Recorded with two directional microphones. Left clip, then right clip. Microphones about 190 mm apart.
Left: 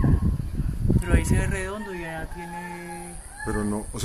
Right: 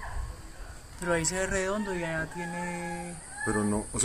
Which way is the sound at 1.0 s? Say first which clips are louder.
Right 2 dB; 45° right (ahead or behind).